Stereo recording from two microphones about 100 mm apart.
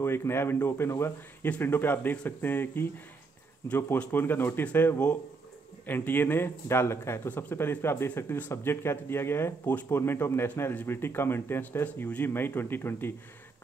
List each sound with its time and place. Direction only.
0.0 s speech: 25° left (ahead or behind)